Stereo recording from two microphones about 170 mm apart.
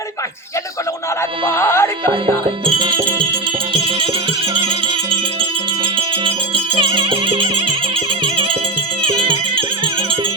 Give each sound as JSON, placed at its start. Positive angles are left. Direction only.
{"t": 1.5, "sound": "speech", "side_deg": 15}
{"t": 2.6, "sound": "music", "side_deg": -30}